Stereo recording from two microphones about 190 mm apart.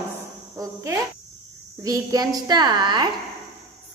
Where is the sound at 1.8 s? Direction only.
20° right (ahead or behind).